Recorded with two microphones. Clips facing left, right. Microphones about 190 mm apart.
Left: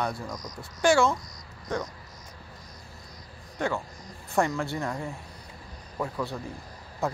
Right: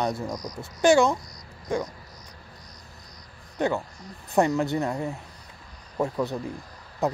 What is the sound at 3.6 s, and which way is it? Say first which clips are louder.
Speech: right 4 dB; 20° right (ahead or behind).